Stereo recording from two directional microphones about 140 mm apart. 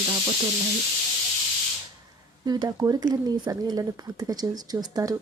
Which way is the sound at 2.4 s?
30° right (ahead or behind).